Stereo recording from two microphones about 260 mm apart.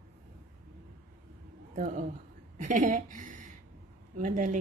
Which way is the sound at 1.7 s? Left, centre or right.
Right.